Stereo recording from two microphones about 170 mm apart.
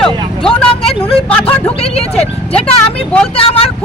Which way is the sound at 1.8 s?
35° left (ahead or behind).